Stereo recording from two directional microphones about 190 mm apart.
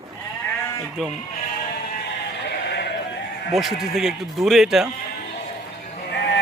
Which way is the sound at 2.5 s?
60° left (ahead or behind).